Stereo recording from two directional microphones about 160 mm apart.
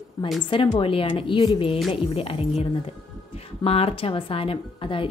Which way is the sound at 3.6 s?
40° left (ahead or behind).